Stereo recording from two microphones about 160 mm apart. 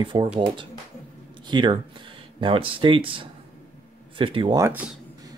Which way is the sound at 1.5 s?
30° right (ahead or behind).